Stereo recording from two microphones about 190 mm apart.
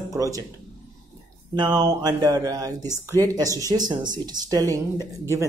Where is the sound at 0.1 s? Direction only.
15° right (ahead or behind).